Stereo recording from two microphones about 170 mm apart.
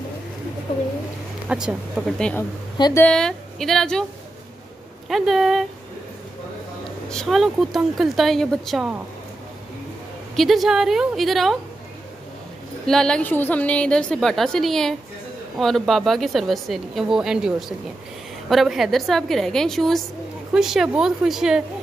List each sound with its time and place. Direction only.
1.5 s a woman's voice: 5° right (ahead or behind)
2.8 s speech: 15° left (ahead or behind)
3.1 s a woman's voice: 5° left (ahead or behind)
5.0 s a woman's voice: centre (ahead or behind)
7.1 s a woman's voice: centre (ahead or behind)
10.3 s a woman's voice: centre (ahead or behind)
12.8 s a woman's voice: 5° left (ahead or behind)